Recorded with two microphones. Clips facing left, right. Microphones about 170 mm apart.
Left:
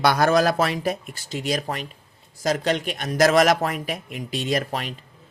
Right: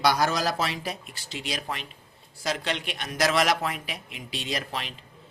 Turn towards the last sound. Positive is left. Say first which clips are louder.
# left 7 dB
turn(degrees=45)  # may be behind; listen again after turning